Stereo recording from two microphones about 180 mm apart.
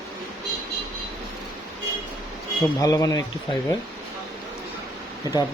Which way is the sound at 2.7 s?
20° left (ahead or behind).